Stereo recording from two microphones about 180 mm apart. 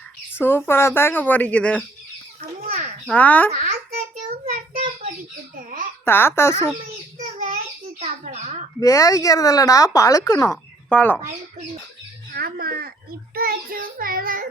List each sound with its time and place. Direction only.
0.3 s speech: 15° left (ahead or behind)
3.1 s speech: 10° left (ahead or behind)
3.5 s a child's voice: 50° right (ahead or behind)
4.4 s child singing: 45° right (ahead or behind)
6.1 s speech: 10° left (ahead or behind)
7.3 s child singing: 45° right (ahead or behind)
7.9 s bird: 40° right (ahead or behind)
8.8 s speech: 20° left (ahead or behind)
12.3 s speech: 55° right (ahead or behind)
13.3 s child singing: 55° right (ahead or behind)